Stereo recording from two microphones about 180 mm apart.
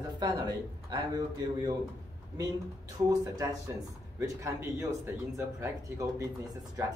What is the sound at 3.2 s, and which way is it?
Speech, 20° right (ahead or behind).